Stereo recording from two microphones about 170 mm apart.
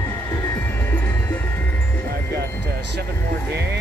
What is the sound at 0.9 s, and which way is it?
Music, 10° left (ahead or behind).